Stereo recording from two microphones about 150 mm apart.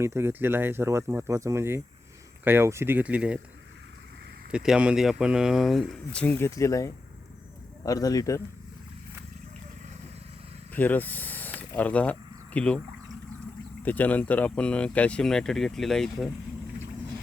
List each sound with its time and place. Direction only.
0.0 s speech: 15° right (ahead or behind)
4.5 s a man's voice: 5° right (ahead or behind); by 8.4 s 25° left (ahead or behind)
10.7 s speech: 10° left (ahead or behind)
13.8 s speech: 10° left (ahead or behind)